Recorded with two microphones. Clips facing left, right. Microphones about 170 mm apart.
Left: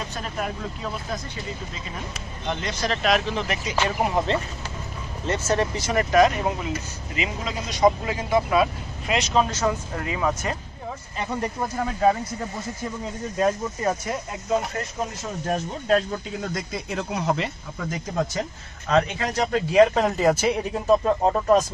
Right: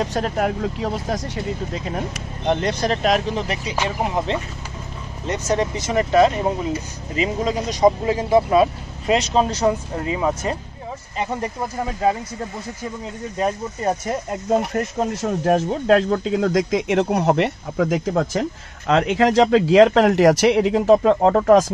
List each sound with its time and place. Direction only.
0.0 s speech: 75° right (ahead or behind); by 3.0 s 55° right (ahead or behind)
3.0 s speech: 40° right (ahead or behind)
3.7 s speech: 15° right (ahead or behind)
15.0 s a man's voice: 70° right (ahead or behind)